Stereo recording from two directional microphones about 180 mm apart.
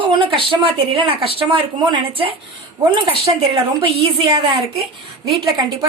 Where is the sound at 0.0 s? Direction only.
25° right (ahead or behind).